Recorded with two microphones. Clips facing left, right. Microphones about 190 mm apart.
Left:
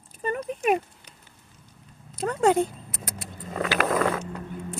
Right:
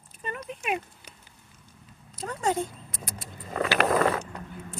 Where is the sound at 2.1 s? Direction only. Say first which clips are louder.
Left 7 dB; 65° left (ahead or behind).